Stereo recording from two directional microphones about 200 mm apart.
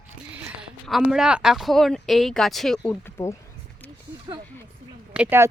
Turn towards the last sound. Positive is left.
turn(degrees=-10)  # may be behind; listen again after turning